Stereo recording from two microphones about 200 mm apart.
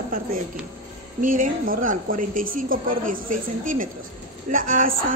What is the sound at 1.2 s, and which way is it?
A woman's voice, 45° right (ahead or behind).